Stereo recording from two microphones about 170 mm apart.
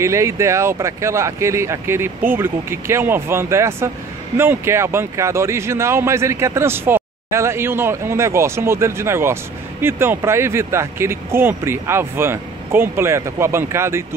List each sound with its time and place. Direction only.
0.0 s speech: 15° right (ahead or behind)